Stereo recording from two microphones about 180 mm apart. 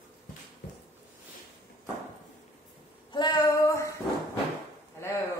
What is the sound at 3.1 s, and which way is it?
Female singing, 25° left (ahead or behind).